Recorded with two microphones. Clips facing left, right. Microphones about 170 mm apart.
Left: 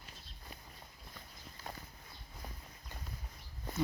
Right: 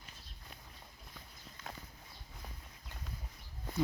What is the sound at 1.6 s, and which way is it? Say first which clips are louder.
Walk: left 1 dB; 35° left (ahead or behind).